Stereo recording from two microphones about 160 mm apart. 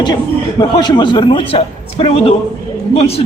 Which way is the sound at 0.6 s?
25° left (ahead or behind).